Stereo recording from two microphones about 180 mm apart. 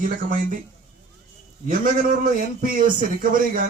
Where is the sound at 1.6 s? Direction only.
50° right (ahead or behind).